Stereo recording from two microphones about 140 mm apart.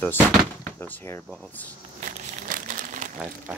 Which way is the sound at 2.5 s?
75° right (ahead or behind).